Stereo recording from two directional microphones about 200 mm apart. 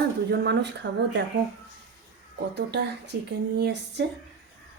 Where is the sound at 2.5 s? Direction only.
60° right (ahead or behind).